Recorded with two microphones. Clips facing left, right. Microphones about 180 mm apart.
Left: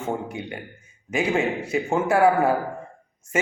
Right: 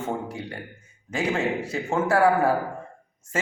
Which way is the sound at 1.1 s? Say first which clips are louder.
Left 2 dB; 15° left (ahead or behind).